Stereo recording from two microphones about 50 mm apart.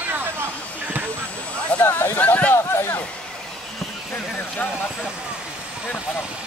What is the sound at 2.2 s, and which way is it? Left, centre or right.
Speech, left.